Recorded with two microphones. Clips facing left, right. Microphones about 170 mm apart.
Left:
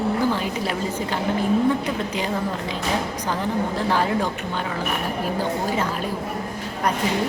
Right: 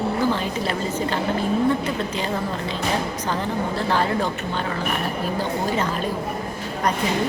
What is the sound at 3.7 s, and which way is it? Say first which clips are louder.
Speech: right 1 dB; 10° left (ahead or behind).